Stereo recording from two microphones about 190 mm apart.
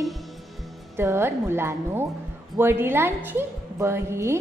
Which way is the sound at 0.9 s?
15° right (ahead or behind).